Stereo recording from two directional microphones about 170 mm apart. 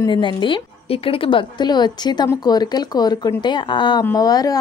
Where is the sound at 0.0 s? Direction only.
25° left (ahead or behind).